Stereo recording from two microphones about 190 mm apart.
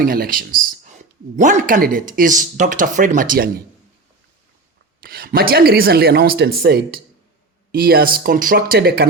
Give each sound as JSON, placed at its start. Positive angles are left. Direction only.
{"t": 0.0, "sound": "speech", "side_deg": -50}
{"t": 5.0, "sound": "speech", "side_deg": -50}